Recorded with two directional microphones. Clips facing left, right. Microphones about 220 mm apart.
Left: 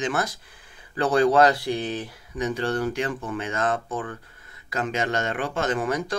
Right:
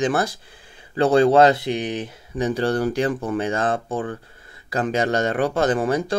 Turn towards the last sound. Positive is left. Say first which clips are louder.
# right 5 dB
turn(degrees=-30)  # may be behind; listen again after turning